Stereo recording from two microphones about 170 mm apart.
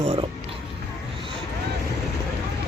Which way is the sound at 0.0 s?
35° right (ahead or behind).